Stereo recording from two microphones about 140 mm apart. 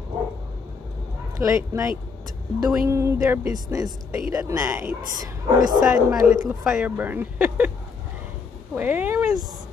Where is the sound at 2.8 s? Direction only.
20° right (ahead or behind).